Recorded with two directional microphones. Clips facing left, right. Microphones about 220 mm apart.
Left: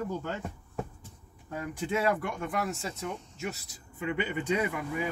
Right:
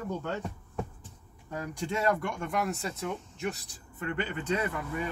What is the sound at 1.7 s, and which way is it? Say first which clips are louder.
Speech: left 1 dB; 5° left (ahead or behind).